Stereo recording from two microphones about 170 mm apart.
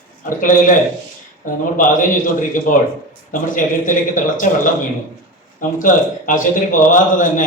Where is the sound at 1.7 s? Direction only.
50° left (ahead or behind).